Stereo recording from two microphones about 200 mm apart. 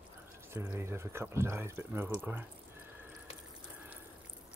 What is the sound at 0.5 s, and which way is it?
Speech, 10° right (ahead or behind).